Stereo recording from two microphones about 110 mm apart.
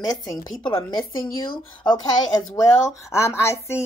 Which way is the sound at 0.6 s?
55° left (ahead or behind).